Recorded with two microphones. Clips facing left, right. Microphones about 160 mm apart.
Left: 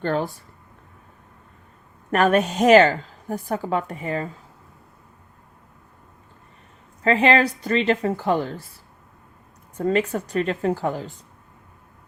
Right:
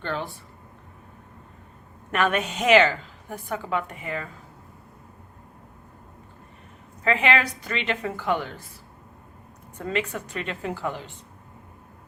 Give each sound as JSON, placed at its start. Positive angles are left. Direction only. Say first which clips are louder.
{"t": 0.0, "sound": "a woman's voice", "louder": "left 7 dB", "side_deg": 40}
{"t": 2.1, "sound": "a woman's voice", "louder": "left 6 dB", "side_deg": 40}
{"t": 7.0, "sound": "a woman's voice", "louder": "left 5 dB", "side_deg": 35}
{"t": 9.7, "sound": "a woman's voice", "louder": "left 7 dB", "side_deg": 40}